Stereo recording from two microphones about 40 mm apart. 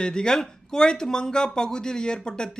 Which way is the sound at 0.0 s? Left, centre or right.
Centre.